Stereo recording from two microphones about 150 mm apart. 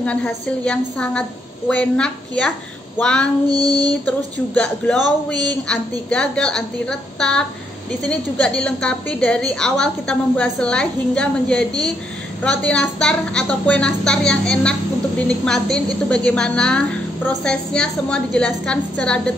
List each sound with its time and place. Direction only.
0.0 s a woman's voice: 10° left (ahead or behind)
3.4 s child singing: 25° right (ahead or behind)
4.6 s a woman's voice: 5° left (ahead or behind)